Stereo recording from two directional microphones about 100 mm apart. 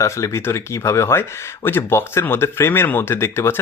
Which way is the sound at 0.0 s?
30° left (ahead or behind).